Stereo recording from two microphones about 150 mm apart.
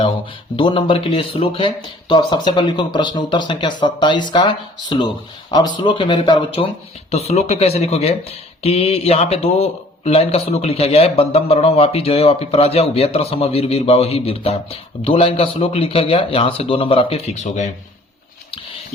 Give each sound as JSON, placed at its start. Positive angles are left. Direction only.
{"t": 0.5, "sound": "speech", "side_deg": 35}
{"t": 7.1, "sound": "speech", "side_deg": 45}